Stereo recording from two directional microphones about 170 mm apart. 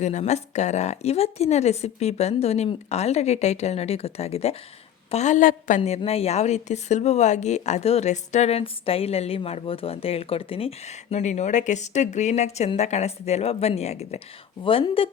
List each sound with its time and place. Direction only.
0.0 s a woman's voice: 45° left (ahead or behind)